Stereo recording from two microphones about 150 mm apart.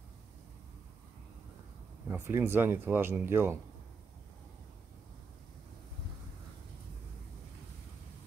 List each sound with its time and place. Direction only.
2.0 s speech: 15° right (ahead or behind)